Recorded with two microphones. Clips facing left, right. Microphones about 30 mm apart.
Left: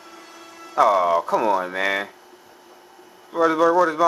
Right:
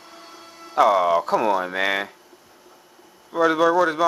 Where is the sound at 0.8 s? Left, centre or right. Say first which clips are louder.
Even; centre.